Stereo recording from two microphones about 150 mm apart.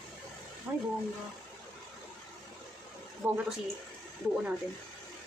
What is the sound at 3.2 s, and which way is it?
Speech, 10° right (ahead or behind).